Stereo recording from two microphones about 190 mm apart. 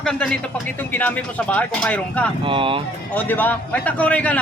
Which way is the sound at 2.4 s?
25° right (ahead or behind).